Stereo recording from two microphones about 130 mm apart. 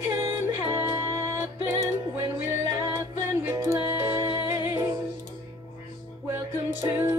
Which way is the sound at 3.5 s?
25° right (ahead or behind).